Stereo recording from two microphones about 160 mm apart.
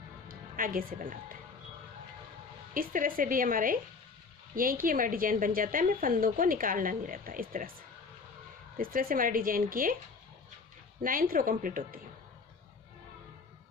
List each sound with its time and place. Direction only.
0.3 s speech: 60° right (ahead or behind)
2.7 s a woman's voice: 60° right (ahead or behind)
8.8 s a woman's voice: 65° right (ahead or behind)
11.0 s a woman's voice: 60° right (ahead or behind)